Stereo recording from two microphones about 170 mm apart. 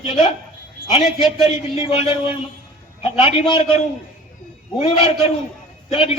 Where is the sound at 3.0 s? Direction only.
35° left (ahead or behind).